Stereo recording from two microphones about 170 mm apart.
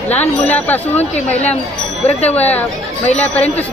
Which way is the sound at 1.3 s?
40° left (ahead or behind).